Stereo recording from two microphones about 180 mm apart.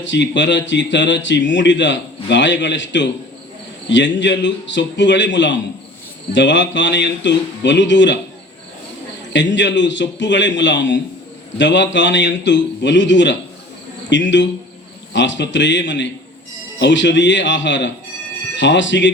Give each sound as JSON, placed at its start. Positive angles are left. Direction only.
{"t": 0.0, "sound": "speech", "side_deg": 85}
{"t": 9.3, "sound": "speech", "side_deg": 85}